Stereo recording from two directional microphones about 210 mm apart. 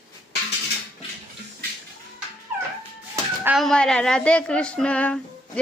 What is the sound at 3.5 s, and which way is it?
A woman's voice, 5° left (ahead or behind).